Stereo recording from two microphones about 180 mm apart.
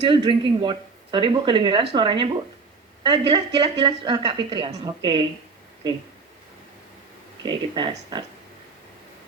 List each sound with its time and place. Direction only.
0.0 s a woman's voice: 25° right (ahead or behind)
7.4 s a woman's voice: 25° right (ahead or behind)